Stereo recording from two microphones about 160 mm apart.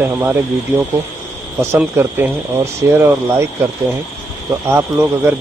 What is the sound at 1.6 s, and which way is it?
Speech, 15° right (ahead or behind).